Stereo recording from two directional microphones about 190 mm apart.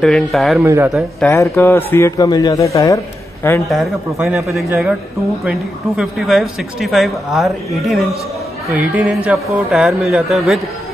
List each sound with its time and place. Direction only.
0.0 s a woman's voice: centre (ahead or behind)
0.6 s a man's voice: 10° right (ahead or behind)
1.2 s speech: 10° left (ahead or behind)
3.6 s a woman's voice: centre (ahead or behind)
4.6 s a man's voice: 10° right (ahead or behind)